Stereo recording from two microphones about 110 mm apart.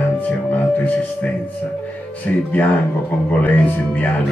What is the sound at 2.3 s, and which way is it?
Speech, 15° left (ahead or behind).